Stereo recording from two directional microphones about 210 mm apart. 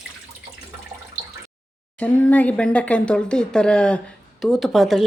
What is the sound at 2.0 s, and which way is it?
Speech, 5° left (ahead or behind).